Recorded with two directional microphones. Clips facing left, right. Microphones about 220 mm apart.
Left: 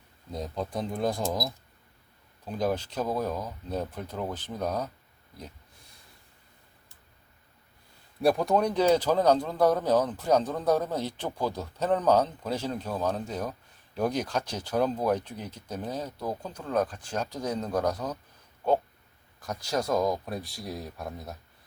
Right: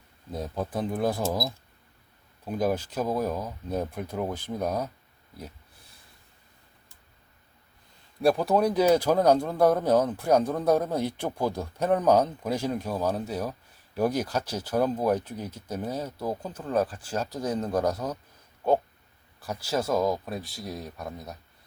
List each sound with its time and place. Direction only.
0.3 s speech: 5° right (ahead or behind)
8.2 s speech: centre (ahead or behind)
19.4 s speech: 5° right (ahead or behind)